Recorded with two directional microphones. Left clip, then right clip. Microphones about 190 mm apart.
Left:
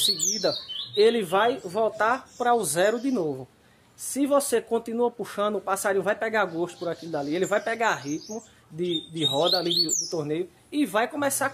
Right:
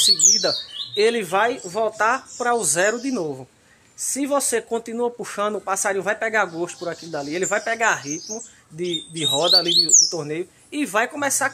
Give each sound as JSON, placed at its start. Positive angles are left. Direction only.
{"t": 0.0, "sound": "speech", "side_deg": -10}
{"t": 9.3, "sound": "speech", "side_deg": -15}